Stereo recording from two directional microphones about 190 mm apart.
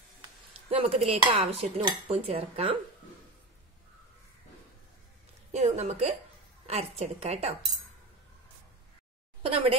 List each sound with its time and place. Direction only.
0.2 s dishes: 30° right (ahead or behind)
1.9 s a woman's voice: 30° right (ahead or behind)
5.5 s a woman's voice: 35° right (ahead or behind)
9.4 s a woman's voice: 30° right (ahead or behind)